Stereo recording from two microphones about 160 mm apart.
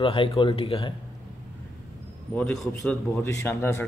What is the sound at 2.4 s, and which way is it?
A man's voice, 5° left (ahead or behind).